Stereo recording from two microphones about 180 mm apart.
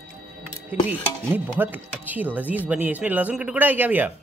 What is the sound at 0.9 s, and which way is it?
Speech, 10° right (ahead or behind).